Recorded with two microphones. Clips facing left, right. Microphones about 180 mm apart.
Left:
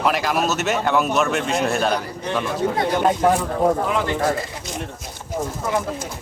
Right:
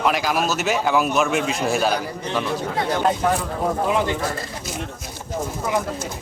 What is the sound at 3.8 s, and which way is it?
Speech, 15° right (ahead or behind).